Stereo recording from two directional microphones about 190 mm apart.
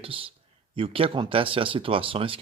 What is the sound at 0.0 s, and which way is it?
Speech, 30° right (ahead or behind).